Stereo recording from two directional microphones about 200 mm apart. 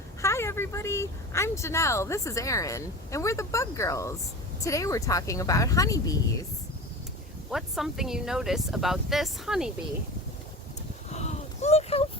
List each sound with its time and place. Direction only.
0.2 s a woman's voice: 15° left (ahead or behind)
7.5 s speech: centre (ahead or behind)
11.1 s a sound: 35° left (ahead or behind)